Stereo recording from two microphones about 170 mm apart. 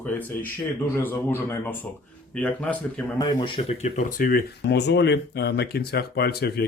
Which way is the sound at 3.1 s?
25° left (ahead or behind).